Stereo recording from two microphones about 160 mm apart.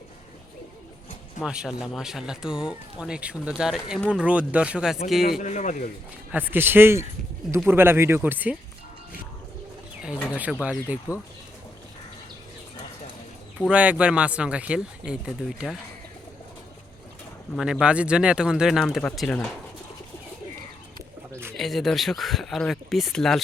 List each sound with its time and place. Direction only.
1.4 s speech: 5° right (ahead or behind)
5.4 s speech: 50° left (ahead or behind)
6.3 s speech: 10° right (ahead or behind)
10.6 s speech: 10° right (ahead or behind)
13.6 s speech: 5° right (ahead or behind)
17.6 s speech: 5° right (ahead or behind)
21.5 s speech: centre (ahead or behind)